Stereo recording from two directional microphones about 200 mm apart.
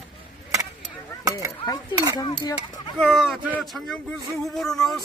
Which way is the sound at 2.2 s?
20° left (ahead or behind).